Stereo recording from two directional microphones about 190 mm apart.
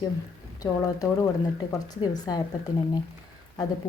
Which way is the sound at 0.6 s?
20° left (ahead or behind).